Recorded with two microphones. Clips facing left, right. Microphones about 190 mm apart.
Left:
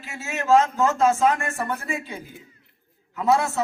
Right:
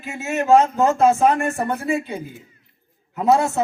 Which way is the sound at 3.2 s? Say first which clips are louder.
Right 4 dB; 35° right (ahead or behind).